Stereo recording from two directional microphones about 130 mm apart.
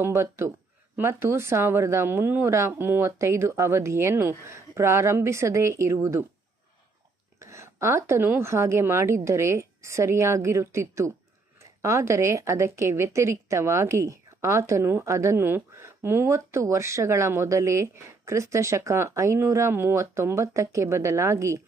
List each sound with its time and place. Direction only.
0.0 s a woman's voice: 20° right (ahead or behind)
7.3 s a woman's voice: 20° right (ahead or behind)